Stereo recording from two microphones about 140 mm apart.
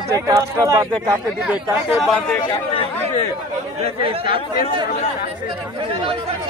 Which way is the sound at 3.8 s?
40° right (ahead or behind).